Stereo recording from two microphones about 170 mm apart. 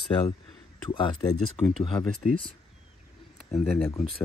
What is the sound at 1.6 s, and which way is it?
Speech, centre (ahead or behind).